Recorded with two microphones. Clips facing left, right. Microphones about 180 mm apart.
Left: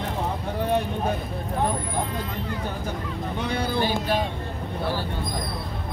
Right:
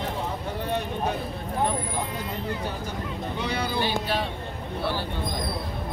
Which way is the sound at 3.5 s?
50° left (ahead or behind).